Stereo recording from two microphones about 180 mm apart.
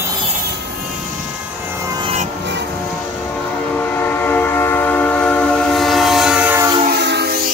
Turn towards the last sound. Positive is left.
turn(degrees=-60)  # may be behind; listen again after turning